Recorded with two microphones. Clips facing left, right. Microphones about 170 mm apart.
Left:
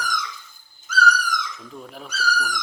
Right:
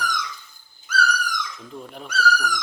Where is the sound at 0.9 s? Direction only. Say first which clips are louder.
Even; 60° right (ahead or behind).